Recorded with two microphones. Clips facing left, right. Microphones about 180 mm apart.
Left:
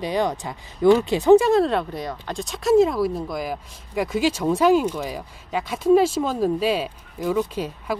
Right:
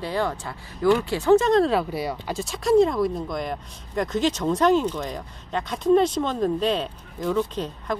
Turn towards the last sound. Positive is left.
turn(degrees=10)  # may be behind; listen again after turning